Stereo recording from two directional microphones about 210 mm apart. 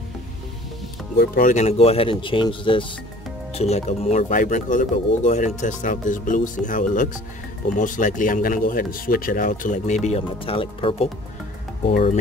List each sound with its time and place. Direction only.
1.1 s speech: 45° left (ahead or behind); by 11.1 s 25° left (ahead or behind)